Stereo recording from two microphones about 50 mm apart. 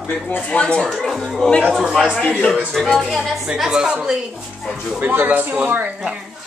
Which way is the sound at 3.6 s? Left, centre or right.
Centre.